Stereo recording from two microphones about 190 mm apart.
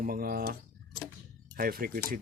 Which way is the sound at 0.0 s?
50° right (ahead or behind).